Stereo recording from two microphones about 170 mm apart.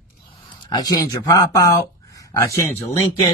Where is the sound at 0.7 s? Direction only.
25° left (ahead or behind).